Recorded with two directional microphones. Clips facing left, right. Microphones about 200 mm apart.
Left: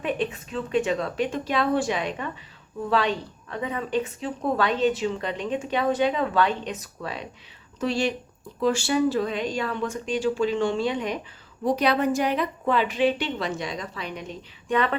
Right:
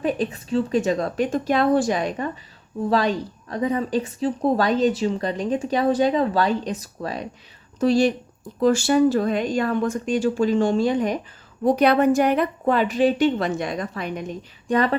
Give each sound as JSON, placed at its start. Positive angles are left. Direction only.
{"t": 0.0, "sound": "a woman's voice", "side_deg": -35}
{"t": 11.6, "sound": "a woman's voice", "side_deg": -55}